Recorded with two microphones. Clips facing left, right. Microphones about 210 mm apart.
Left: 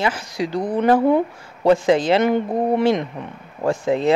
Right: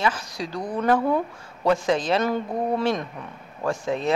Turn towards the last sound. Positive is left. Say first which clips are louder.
# left 6 dB
turn(degrees=30)  # may be behind; listen again after turning